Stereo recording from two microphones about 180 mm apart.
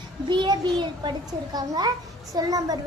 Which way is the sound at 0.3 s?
25° right (ahead or behind).